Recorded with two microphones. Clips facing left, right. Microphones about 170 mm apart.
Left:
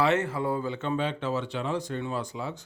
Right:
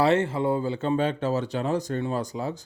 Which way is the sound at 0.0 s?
30° right (ahead or behind).